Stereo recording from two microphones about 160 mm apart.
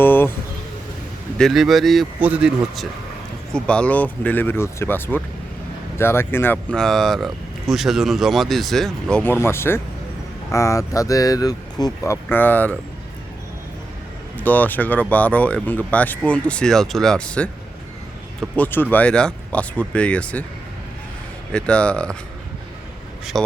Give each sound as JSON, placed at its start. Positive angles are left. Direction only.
{"t": 0.0, "sound": "a sound", "side_deg": 10}
{"t": 1.4, "sound": "speech", "side_deg": 0}
{"t": 3.5, "sound": "speech", "side_deg": 5}
{"t": 14.3, "sound": "speech", "side_deg": 10}
{"t": 18.5, "sound": "speech", "side_deg": 10}
{"t": 21.5, "sound": "speech", "side_deg": 5}